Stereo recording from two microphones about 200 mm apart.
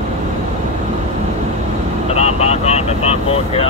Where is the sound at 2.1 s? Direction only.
30° left (ahead or behind).